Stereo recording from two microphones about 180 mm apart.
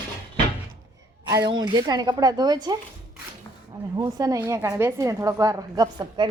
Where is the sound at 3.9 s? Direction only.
20° right (ahead or behind).